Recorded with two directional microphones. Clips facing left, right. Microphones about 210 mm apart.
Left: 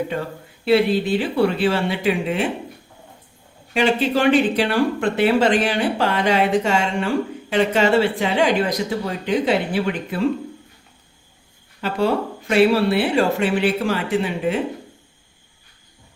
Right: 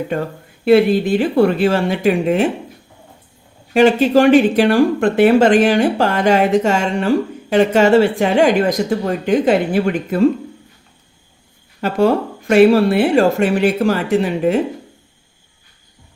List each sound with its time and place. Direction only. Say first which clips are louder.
0.6 s speech: right 5 dB; 50° right (ahead or behind)
3.8 s speech: right 7 dB; 45° right (ahead or behind)
11.8 s speech: right 5 dB; 45° right (ahead or behind)